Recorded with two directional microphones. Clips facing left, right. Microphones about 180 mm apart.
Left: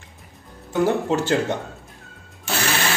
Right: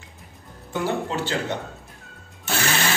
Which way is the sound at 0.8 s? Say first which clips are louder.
Left 5 dB; 45° left (ahead or behind).